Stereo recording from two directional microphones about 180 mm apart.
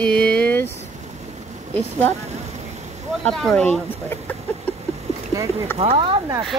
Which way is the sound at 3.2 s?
5° left (ahead or behind).